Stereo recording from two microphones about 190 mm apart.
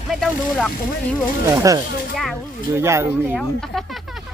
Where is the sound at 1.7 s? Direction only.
15° right (ahead or behind).